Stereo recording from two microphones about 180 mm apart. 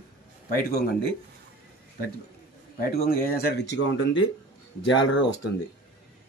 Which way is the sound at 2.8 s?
55° left (ahead or behind).